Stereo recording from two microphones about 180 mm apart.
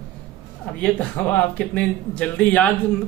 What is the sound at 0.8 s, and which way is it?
Speech, 5° left (ahead or behind).